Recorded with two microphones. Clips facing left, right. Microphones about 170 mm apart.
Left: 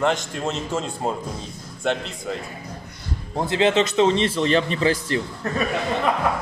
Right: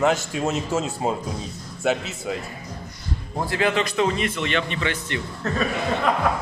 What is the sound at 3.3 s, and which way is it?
A man's voice, 25° left (ahead or behind).